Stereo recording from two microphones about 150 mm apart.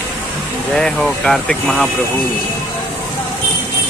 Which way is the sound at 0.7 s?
5° left (ahead or behind).